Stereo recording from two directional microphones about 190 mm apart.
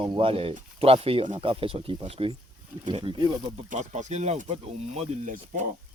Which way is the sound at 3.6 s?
40° right (ahead or behind).